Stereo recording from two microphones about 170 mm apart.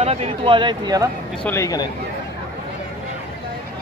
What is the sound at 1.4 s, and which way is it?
Speech, 15° left (ahead or behind).